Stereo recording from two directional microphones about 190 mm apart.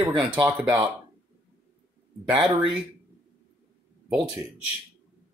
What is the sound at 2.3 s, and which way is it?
Speech, 25° right (ahead or behind).